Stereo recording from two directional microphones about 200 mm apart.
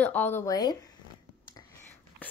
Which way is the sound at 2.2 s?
10° left (ahead or behind).